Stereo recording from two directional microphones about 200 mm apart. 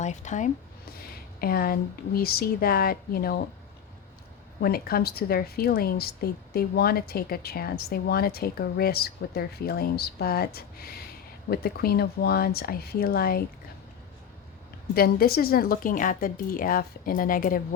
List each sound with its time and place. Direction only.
0.0 s speech: 35° left (ahead or behind)
0.9 s a woman's voice: 50° left (ahead or behind)
4.6 s a woman's voice: 50° left (ahead or behind)
14.9 s a woman's voice: 50° left (ahead or behind)